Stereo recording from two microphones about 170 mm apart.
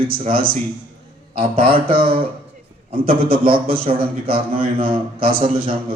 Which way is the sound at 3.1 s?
60° right (ahead or behind).